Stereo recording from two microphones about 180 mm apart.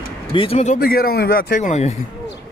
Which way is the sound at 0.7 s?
55° left (ahead or behind).